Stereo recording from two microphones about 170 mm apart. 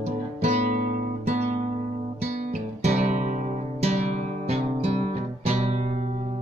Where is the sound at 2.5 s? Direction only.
45° right (ahead or behind).